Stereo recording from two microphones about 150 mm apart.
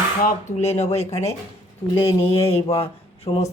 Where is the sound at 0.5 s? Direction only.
45° left (ahead or behind).